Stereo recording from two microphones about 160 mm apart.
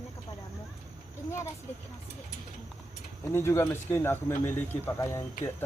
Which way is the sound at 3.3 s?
15° left (ahead or behind).